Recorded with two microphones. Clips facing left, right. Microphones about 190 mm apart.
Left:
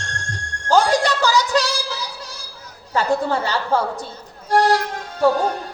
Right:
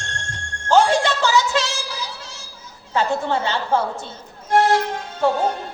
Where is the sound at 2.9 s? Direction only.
25° right (ahead or behind).